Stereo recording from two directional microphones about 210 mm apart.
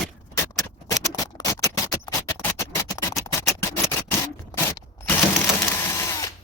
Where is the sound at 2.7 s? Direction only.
15° left (ahead or behind).